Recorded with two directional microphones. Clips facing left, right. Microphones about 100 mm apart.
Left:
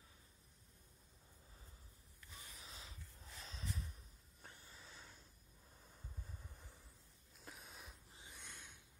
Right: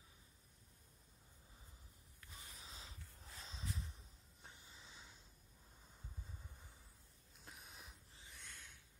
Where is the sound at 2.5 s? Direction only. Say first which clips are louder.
Even; 30° right (ahead or behind).